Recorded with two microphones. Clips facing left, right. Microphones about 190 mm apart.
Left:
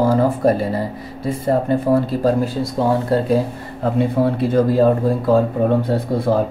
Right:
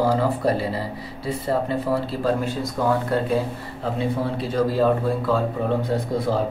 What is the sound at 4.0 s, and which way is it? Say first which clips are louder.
Speech: left 8 dB; 55° left (ahead or behind).